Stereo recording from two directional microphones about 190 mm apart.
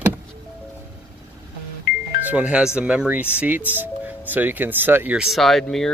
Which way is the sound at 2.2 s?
10° right (ahead or behind).